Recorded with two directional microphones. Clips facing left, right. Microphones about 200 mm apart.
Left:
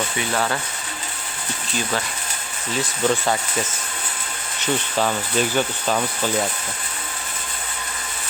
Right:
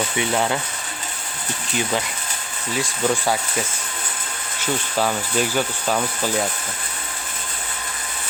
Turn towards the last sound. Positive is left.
turn(degrees=-5)  # may be behind; listen again after turning